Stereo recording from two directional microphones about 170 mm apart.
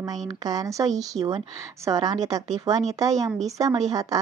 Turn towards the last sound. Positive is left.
turn(degrees=-20)  # may be behind; listen again after turning